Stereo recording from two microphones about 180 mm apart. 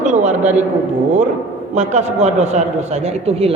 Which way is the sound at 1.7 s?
40° right (ahead or behind).